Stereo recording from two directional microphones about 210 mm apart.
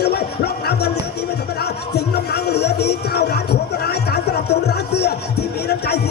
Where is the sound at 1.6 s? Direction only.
50° left (ahead or behind).